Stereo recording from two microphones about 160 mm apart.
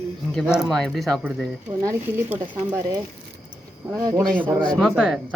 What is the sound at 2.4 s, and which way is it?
Speech, 25° right (ahead or behind).